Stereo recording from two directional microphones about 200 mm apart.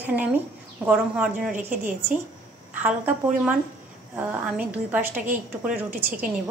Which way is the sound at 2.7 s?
10° right (ahead or behind).